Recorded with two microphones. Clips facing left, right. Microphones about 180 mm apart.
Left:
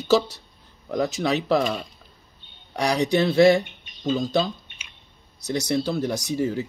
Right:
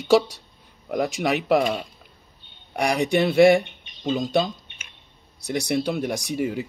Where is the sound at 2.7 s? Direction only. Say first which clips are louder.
Even; 10° right (ahead or behind).